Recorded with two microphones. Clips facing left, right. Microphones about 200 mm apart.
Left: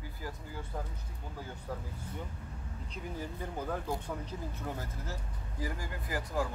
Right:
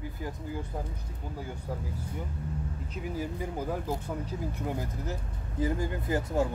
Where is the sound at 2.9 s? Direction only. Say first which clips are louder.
Right 6 dB; 10° right (ahead or behind).